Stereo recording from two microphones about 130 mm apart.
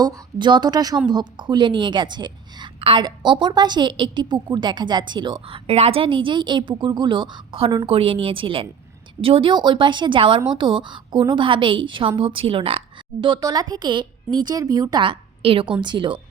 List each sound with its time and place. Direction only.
0.0 s a woman's voice: 35° right (ahead or behind)
13.2 s a woman's voice: 35° right (ahead or behind)